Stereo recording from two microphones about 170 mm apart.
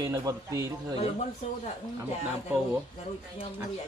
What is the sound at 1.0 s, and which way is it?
Speech, 40° left (ahead or behind).